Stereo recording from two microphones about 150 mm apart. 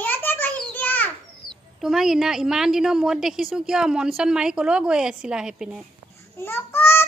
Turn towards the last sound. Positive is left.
turn(degrees=15)  # may be behind; listen again after turning